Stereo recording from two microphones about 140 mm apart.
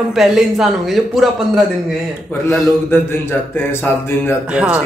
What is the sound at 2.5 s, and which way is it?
Speech, 15° left (ahead or behind).